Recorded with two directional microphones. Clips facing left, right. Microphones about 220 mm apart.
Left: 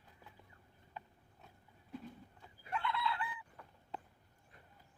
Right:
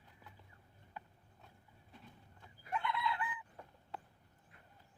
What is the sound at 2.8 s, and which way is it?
Chicken, 20° right (ahead or behind).